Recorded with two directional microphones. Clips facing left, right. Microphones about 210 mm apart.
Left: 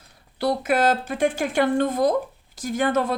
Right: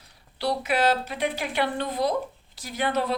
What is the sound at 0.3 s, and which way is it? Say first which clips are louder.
A woman's voice: left 4 dB; 50° left (ahead or behind).